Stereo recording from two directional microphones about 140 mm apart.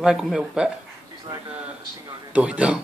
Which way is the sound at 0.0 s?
5° right (ahead or behind).